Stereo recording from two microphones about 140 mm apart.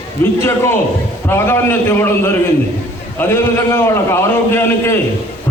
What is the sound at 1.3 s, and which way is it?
A man's voice, 15° left (ahead or behind).